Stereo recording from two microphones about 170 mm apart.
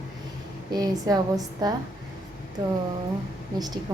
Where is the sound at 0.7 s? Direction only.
20° right (ahead or behind).